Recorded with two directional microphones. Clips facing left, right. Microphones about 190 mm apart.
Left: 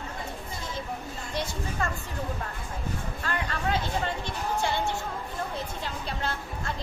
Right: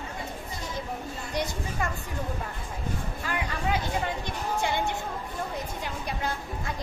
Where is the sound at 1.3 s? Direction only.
20° right (ahead or behind).